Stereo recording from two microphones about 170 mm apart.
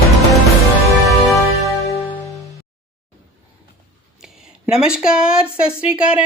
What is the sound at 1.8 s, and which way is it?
Music, 20° left (ahead or behind).